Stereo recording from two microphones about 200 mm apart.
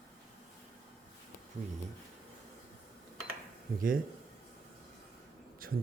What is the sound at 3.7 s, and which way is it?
Speech, 45° right (ahead or behind).